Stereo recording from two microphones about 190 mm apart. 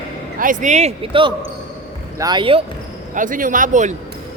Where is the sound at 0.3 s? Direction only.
45° right (ahead or behind); by 2.6 s 25° right (ahead or behind).